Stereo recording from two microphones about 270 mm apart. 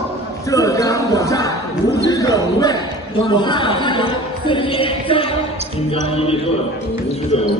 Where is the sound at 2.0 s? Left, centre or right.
Centre.